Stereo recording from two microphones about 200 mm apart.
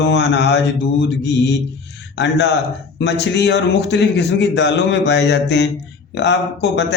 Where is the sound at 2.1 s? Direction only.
60° left (ahead or behind).